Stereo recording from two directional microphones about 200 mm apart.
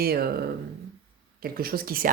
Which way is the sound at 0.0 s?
50° right (ahead or behind).